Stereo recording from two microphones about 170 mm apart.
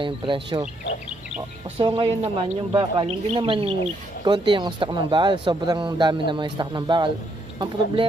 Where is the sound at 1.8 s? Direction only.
30° right (ahead or behind).